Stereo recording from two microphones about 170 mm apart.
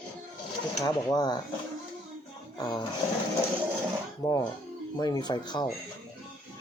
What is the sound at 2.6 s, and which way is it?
Speech, 25° left (ahead or behind).